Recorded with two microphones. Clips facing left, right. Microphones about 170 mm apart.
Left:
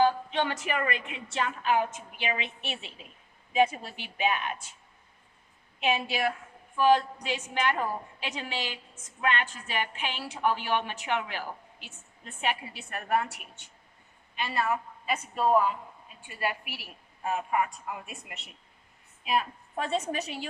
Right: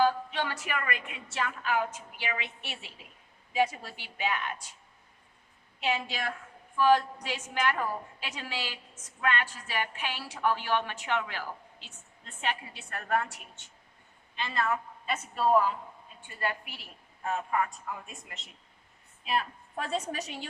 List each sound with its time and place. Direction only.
0.0 s a woman's voice: 20° left (ahead or behind)
5.8 s a woman's voice: 15° left (ahead or behind)
14.3 s a woman's voice: 15° left (ahead or behind)